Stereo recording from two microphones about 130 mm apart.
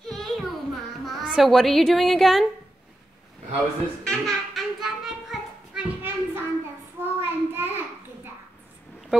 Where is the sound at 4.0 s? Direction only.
5° left (ahead or behind).